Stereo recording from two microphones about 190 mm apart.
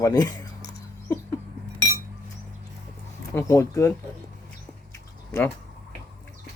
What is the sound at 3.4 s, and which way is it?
Speech, 15° left (ahead or behind).